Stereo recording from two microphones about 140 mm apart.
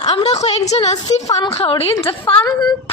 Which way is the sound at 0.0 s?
50° left (ahead or behind).